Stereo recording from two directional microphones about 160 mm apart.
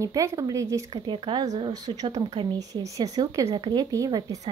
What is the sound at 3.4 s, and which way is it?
Speech, 30° right (ahead or behind).